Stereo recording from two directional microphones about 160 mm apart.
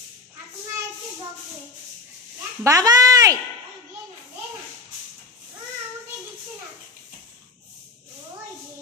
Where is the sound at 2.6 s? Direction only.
20° right (ahead or behind).